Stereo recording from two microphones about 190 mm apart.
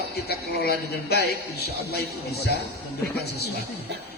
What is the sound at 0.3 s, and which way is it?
A man's voice, 55° left (ahead or behind).